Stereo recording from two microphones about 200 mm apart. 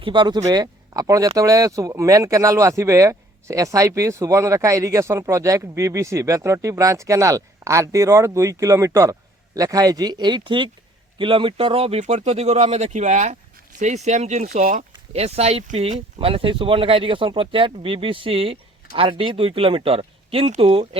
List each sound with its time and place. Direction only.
0.0 s speech: 25° right (ahead or behind)